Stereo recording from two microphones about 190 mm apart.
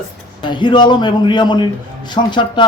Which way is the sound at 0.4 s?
25° left (ahead or behind).